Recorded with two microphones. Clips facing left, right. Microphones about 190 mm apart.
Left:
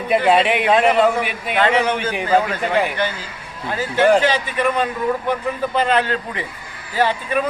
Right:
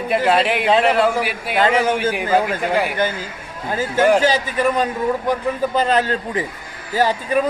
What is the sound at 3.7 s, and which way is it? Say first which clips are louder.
A man's voice: even; 45° right (ahead or behind).